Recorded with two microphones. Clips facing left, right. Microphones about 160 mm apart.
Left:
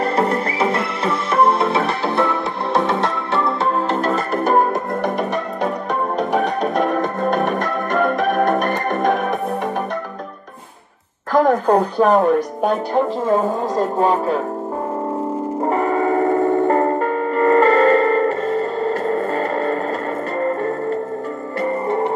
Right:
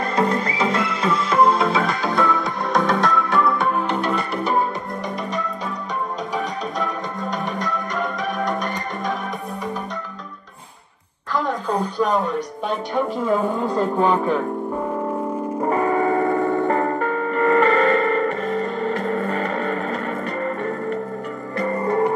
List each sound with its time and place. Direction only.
0.1 s music: 30° left (ahead or behind)
3.9 s music: 45° left (ahead or behind); by 9.2 s 60° left (ahead or behind)
11.3 s a sound: 55° left (ahead or behind)
13.3 s speech: 40° left (ahead or behind)
15.7 s music: 25° left (ahead or behind)